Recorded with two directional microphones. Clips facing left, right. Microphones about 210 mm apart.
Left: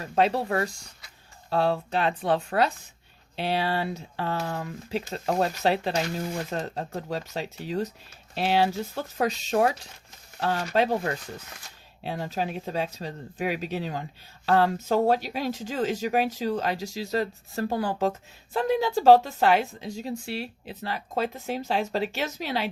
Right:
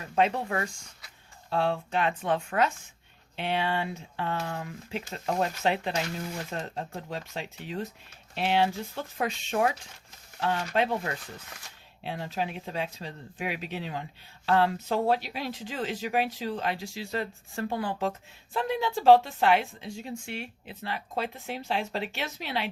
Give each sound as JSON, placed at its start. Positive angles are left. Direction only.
{"t": 0.0, "sound": "speech", "side_deg": 35}